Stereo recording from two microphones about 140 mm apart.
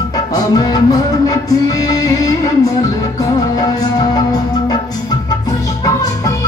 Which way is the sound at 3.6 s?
30° left (ahead or behind).